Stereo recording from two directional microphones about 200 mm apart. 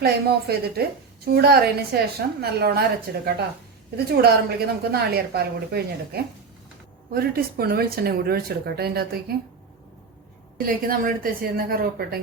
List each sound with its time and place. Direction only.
0.0 s a woman's voice: 50° right (ahead or behind)
10.8 s a woman's voice: 45° right (ahead or behind)